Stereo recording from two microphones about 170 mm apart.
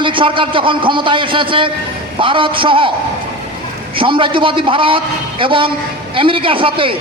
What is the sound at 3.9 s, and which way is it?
A man's voice, 30° right (ahead or behind).